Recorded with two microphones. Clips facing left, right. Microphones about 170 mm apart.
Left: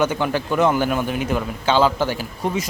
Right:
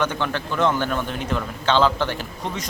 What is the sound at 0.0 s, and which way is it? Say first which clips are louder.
Speech: left 4 dB; 10° left (ahead or behind).